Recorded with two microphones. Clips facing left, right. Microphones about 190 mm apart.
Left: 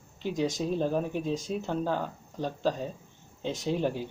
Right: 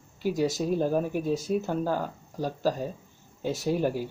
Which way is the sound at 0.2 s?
10° right (ahead or behind).